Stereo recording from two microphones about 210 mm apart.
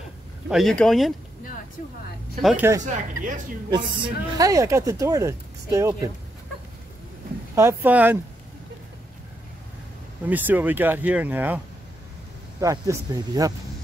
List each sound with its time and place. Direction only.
0.5 s speech: centre (ahead or behind)
2.4 s speech: 10° right (ahead or behind)
7.5 s speech: 10° right (ahead or behind)
10.2 s speech: 10° right (ahead or behind)